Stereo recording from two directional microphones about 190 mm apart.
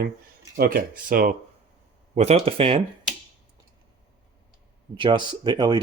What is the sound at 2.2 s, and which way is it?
Speech, 35° right (ahead or behind).